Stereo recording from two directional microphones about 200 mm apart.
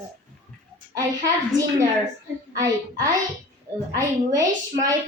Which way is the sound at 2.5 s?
20° right (ahead or behind).